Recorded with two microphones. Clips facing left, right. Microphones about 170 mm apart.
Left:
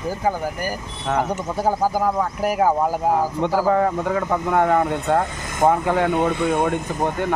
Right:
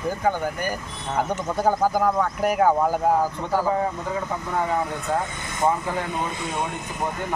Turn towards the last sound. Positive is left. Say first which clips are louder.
# left 7 dB
turn(degrees=60)  # may be behind; listen again after turning